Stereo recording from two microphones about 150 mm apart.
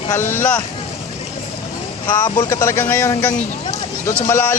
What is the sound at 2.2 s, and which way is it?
Speech, 25° left (ahead or behind).